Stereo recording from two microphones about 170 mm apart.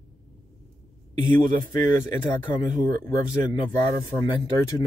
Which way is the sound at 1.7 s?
25° left (ahead or behind).